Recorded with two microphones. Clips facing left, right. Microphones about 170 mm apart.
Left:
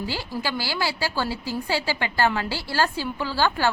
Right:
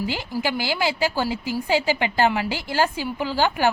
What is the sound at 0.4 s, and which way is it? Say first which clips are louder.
A woman's voice: right 4 dB; 20° right (ahead or behind).